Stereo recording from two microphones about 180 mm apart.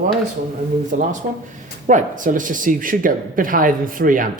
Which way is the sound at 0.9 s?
45° right (ahead or behind).